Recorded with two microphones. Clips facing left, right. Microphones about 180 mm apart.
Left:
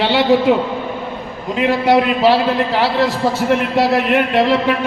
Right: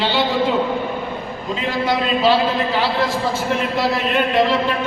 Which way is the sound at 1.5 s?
70° left (ahead or behind).